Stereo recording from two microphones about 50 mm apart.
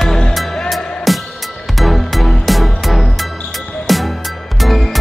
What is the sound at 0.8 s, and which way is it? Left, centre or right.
Music, centre.